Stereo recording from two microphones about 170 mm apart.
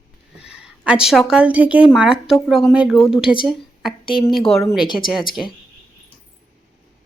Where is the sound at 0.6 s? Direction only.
5° right (ahead or behind).